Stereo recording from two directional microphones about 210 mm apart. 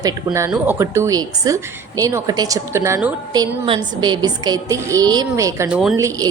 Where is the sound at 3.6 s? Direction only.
20° right (ahead or behind).